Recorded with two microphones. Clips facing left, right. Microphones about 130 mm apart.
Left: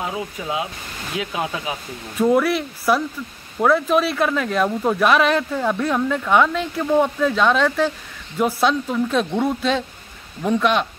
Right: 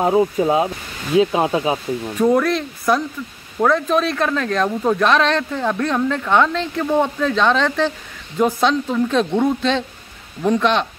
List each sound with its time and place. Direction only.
0.0 s speech: 40° right (ahead or behind)
2.1 s speech: centre (ahead or behind)